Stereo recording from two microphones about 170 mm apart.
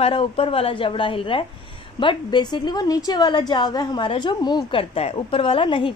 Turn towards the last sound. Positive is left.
turn(degrees=30)  # may be behind; listen again after turning